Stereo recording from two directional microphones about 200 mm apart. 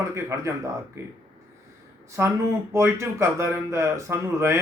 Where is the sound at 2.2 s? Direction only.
10° right (ahead or behind).